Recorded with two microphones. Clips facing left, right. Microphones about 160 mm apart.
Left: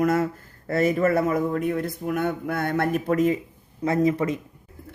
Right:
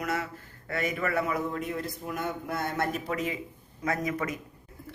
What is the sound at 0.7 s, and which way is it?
Speech, 35° left (ahead or behind).